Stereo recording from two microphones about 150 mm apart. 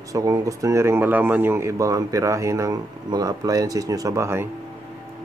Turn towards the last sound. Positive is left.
turn(degrees=-20)  # may be behind; listen again after turning